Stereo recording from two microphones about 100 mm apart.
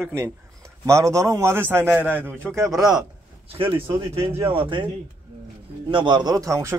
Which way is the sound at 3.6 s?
65° right (ahead or behind).